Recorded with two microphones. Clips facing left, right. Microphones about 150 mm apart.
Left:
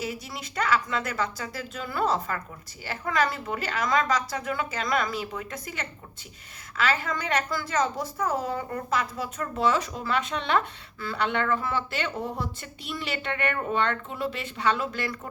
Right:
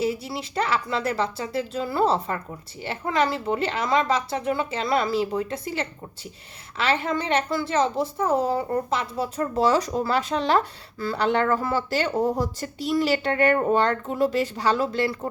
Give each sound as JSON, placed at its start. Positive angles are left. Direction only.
{"t": 0.0, "sound": "a woman's voice", "side_deg": -30}